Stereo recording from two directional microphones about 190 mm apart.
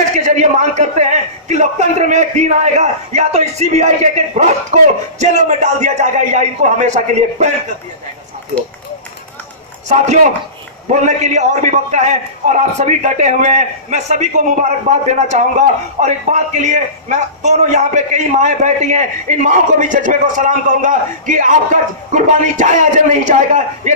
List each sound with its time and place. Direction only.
0.1 s a man's voice: 40° right (ahead or behind)
9.8 s a man's voice: 35° right (ahead or behind)